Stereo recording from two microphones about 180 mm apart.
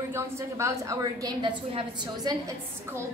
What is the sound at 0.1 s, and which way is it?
A woman's voice, 15° right (ahead or behind).